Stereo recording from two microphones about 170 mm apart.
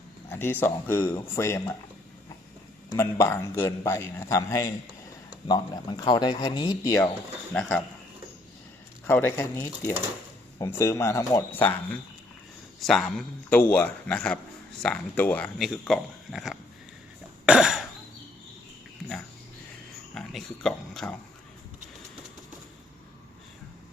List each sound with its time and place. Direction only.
0.3 s a man's voice: 10° left (ahead or behind)
0.9 s a man's voice: 25° left (ahead or behind)
1.4 s a man's voice: 15° left (ahead or behind)
3.0 s a man's voice: 15° left (ahead or behind)
7.5 s a man's voice: 5° left (ahead or behind)
9.0 s a man's voice: 15° left (ahead or behind)
12.8 s a man's voice: 5° left (ahead or behind)
17.4 s cough: 5° right (ahead or behind)
20.1 s speech: 5° left (ahead or behind)